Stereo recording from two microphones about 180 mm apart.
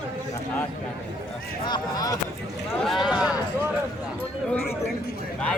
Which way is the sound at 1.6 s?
25° left (ahead or behind).